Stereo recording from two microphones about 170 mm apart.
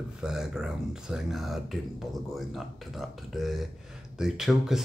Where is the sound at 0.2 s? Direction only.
5° right (ahead or behind).